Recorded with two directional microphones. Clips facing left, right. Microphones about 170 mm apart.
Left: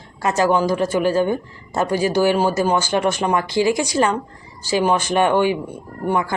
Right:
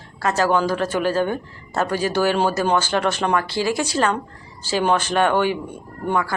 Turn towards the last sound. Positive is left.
turn(degrees=15)  # may be behind; listen again after turning